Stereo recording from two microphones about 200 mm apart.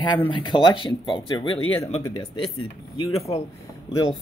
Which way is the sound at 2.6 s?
30° left (ahead or behind).